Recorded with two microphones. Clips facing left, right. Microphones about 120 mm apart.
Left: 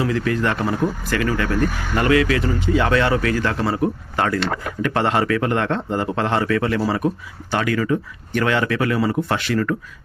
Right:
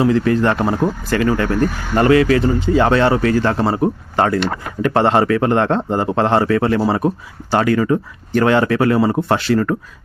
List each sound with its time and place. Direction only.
0.0 s speech: 30° right (ahead or behind)